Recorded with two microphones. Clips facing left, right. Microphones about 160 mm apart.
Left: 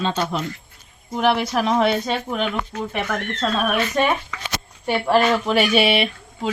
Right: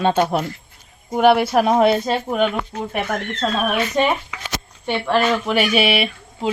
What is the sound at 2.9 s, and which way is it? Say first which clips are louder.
Speech: right 2 dB; 20° right (ahead or behind).